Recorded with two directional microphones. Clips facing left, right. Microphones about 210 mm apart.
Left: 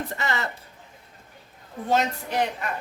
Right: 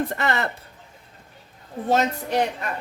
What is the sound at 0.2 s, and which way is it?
Speech, 55° right (ahead or behind).